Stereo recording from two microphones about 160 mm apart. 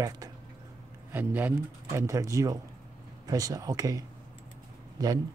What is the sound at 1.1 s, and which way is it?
A man's voice, 10° right (ahead or behind).